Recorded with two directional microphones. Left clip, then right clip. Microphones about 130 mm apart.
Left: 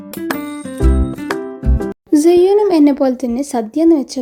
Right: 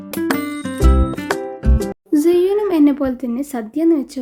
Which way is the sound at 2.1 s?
20° left (ahead or behind).